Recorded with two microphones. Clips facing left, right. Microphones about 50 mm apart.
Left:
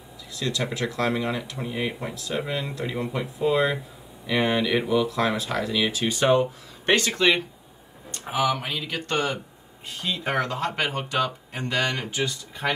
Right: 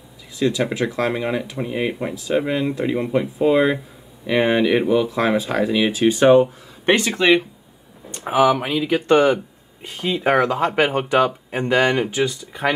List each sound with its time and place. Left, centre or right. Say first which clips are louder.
0.3 s speech: right 8 dB; centre